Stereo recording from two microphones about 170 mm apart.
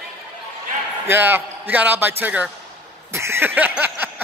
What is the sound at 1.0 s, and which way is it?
Speech, 10° right (ahead or behind).